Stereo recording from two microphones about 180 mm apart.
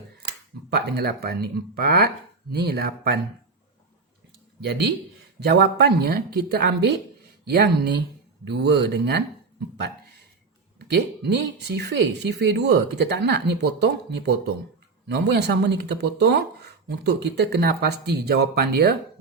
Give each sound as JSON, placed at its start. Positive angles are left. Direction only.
{"t": 0.7, "sound": "speech", "side_deg": -60}
{"t": 5.4, "sound": "speech", "side_deg": -65}
{"t": 10.9, "sound": "speech", "side_deg": -70}